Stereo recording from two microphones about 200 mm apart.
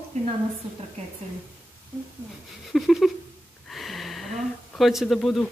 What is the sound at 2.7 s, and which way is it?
Speech, centre (ahead or behind).